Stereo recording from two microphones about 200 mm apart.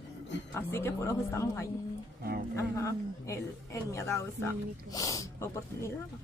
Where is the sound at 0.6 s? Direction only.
10° left (ahead or behind).